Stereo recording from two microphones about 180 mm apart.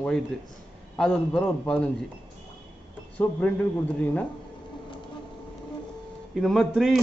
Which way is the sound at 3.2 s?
10° left (ahead or behind).